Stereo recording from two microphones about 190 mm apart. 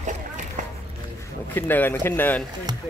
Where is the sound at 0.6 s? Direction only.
40° right (ahead or behind).